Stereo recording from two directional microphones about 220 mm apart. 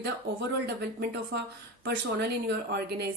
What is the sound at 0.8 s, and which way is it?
A woman's voice, 45° right (ahead or behind).